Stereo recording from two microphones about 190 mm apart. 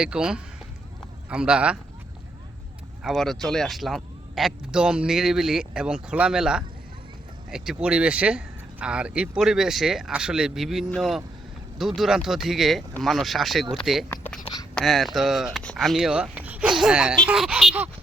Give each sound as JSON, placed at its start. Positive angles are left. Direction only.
{"t": 0.0, "sound": "speech", "side_deg": -5}
{"t": 3.0, "sound": "speech", "side_deg": 0}
{"t": 14.4, "sound": "a sound", "side_deg": 20}
{"t": 14.8, "sound": "speech", "side_deg": 0}